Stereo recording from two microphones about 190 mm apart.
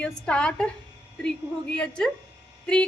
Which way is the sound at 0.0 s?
5° left (ahead or behind).